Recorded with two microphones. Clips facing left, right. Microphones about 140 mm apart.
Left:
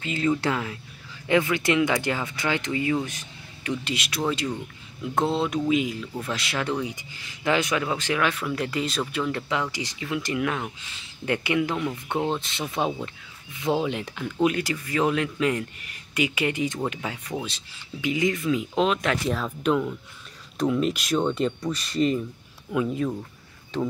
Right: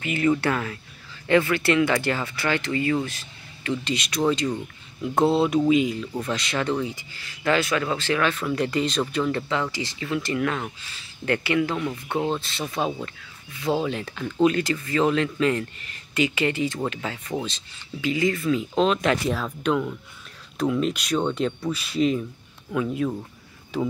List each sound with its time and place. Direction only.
0.3 s speech: 10° left (ahead or behind); by 23.9 s 5° right (ahead or behind)